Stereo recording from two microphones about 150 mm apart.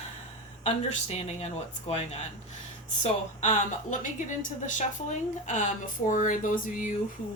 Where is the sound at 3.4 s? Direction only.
55° left (ahead or behind).